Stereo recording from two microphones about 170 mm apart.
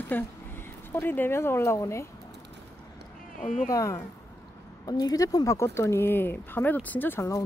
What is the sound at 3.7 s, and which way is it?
Speech, 20° left (ahead or behind).